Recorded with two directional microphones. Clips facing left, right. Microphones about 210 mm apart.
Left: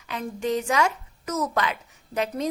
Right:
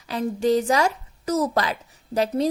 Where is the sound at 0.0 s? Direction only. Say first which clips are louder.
Right 6 dB; 35° right (ahead or behind).